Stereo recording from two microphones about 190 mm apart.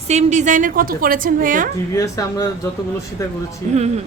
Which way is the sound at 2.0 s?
15° left (ahead or behind).